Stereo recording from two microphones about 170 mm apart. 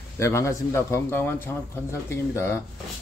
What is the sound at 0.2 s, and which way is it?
Speech, 15° left (ahead or behind).